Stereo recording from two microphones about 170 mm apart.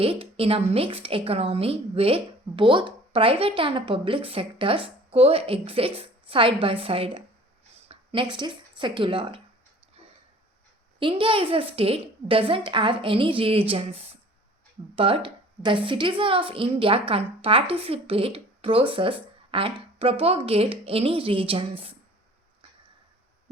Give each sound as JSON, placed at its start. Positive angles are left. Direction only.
{"t": 0.0, "sound": "a woman's voice", "side_deg": -35}
{"t": 11.0, "sound": "a woman's voice", "side_deg": -30}